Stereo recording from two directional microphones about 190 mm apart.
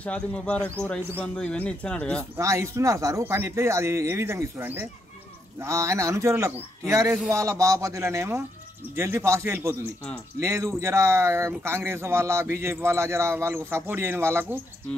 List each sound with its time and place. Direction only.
0.0 s speech: 5° left (ahead or behind)
2.3 s speech: 15° right (ahead or behind)